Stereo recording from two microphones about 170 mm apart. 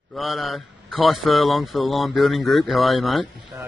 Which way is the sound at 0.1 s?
Centre (ahead or behind).